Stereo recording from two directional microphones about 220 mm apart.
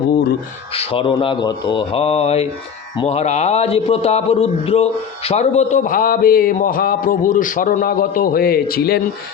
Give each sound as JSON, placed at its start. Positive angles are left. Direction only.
{"t": 0.7, "sound": "a man's voice", "side_deg": 25}